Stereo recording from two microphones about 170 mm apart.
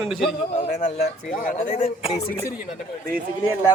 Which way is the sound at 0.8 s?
60° left (ahead or behind).